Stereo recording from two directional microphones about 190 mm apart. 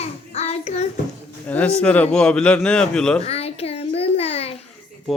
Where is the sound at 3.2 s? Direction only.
30° left (ahead or behind).